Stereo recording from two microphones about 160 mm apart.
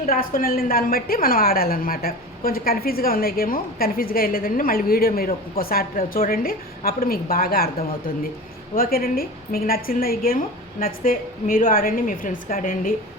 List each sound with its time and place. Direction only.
0.0 s a woman's voice: 65° left (ahead or behind)
8.7 s a woman's voice: 65° left (ahead or behind)